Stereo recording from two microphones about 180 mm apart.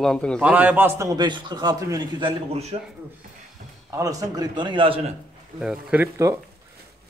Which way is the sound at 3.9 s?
20° right (ahead or behind).